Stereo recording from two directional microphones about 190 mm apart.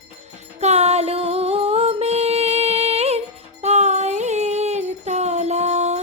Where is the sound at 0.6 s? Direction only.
35° right (ahead or behind).